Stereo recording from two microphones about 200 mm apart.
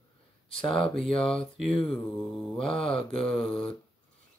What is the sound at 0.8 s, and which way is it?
Speech, centre (ahead or behind).